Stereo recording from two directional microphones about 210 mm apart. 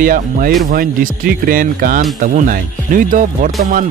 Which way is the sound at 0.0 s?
40° right (ahead or behind).